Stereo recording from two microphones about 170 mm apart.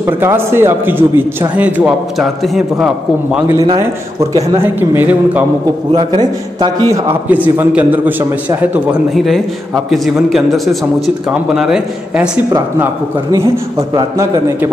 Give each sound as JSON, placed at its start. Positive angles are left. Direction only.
{"t": 0.0, "sound": "a man's voice", "side_deg": -15}
{"t": 3.5, "sound": "a man's voice", "side_deg": -25}
{"t": 5.9, "sound": "a man's voice", "side_deg": -25}
{"t": 7.2, "sound": "a man's voice", "side_deg": -10}
{"t": 9.1, "sound": "speech", "side_deg": 0}
{"t": 12.4, "sound": "a man's voice", "side_deg": -20}